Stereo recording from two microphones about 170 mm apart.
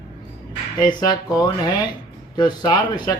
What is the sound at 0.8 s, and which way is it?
Speech, 25° left (ahead or behind).